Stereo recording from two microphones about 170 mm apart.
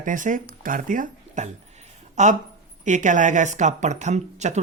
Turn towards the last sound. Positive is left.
turn(degrees=-40)  # may be behind; listen again after turning